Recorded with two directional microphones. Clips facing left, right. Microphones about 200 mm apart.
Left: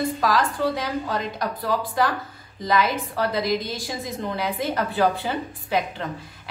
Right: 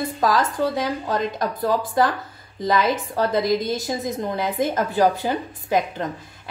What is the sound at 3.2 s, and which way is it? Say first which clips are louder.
A woman's voice: right 3 dB; 45° right (ahead or behind).